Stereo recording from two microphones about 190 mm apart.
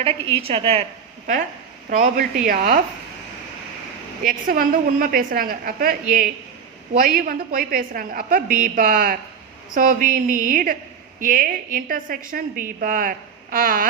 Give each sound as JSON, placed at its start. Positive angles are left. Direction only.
{"t": 0.4, "sound": "a woman's voice", "side_deg": -30}
{"t": 1.9, "sound": "a woman's voice", "side_deg": -40}
{"t": 4.2, "sound": "a woman's voice", "side_deg": -45}